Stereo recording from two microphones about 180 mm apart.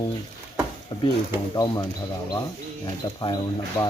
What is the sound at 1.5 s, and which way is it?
Speech, 20° left (ahead or behind).